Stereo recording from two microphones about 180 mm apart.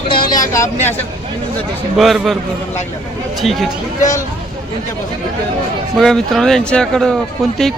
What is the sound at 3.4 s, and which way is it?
Speech, centre (ahead or behind).